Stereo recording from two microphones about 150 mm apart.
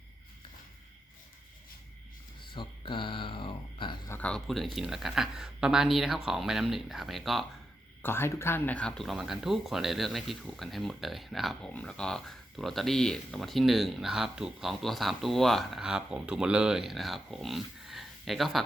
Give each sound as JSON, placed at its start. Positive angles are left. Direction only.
{"t": 2.4, "sound": "a sound", "side_deg": 35}
{"t": 4.1, "sound": "speech", "side_deg": 5}
{"t": 8.0, "sound": "speech", "side_deg": 15}